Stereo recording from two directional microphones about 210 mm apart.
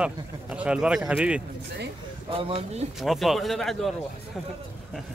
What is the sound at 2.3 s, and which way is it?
Speech, 30° right (ahead or behind).